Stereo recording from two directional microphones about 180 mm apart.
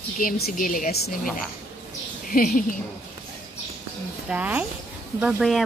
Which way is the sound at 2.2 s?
50° left (ahead or behind).